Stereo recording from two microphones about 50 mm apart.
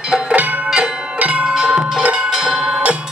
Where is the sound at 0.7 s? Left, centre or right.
Centre.